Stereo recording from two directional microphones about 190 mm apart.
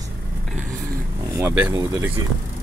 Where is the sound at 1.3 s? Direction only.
10° right (ahead or behind).